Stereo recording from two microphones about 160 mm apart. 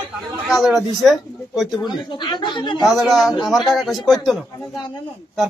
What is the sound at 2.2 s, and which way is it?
Speech, 30° left (ahead or behind).